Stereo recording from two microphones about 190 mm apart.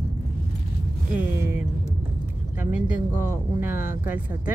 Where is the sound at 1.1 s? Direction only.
10° right (ahead or behind).